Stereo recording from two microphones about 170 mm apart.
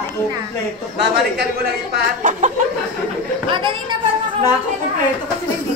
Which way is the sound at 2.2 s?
45° right (ahead or behind).